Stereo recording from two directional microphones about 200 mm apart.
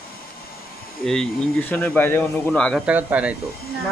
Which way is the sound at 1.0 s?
5° left (ahead or behind).